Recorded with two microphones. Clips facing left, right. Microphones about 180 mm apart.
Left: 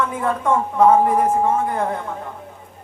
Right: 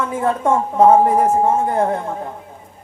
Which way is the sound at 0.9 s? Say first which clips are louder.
Right 3 dB; 45° right (ahead or behind).